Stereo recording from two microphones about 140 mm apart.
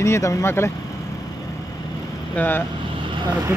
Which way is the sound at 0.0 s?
20° left (ahead or behind).